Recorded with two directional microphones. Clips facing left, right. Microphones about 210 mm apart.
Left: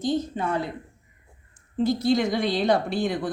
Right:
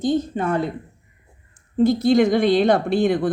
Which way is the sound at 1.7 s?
50° right (ahead or behind).